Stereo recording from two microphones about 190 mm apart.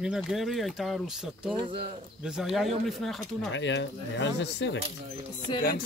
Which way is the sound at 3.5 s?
70° left (ahead or behind).